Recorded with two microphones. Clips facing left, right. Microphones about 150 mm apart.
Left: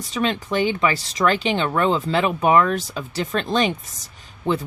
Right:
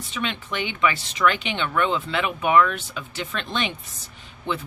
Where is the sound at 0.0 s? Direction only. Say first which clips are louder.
Left 6 dB; 40° left (ahead or behind).